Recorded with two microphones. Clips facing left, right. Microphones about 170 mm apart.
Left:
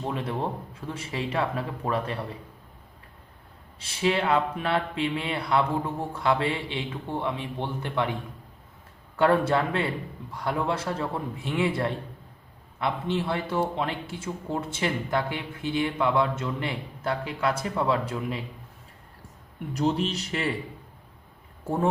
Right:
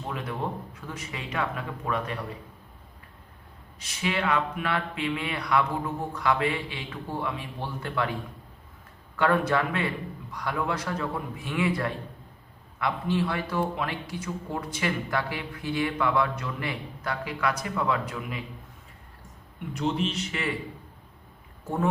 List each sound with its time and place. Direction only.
0.1 s speech: 30° left (ahead or behind)
3.8 s speech: 30° left (ahead or behind)
9.1 s speech: 30° left (ahead or behind)
19.7 s speech: 35° left (ahead or behind)